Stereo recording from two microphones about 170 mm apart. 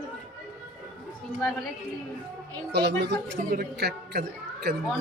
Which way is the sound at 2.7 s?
85° right.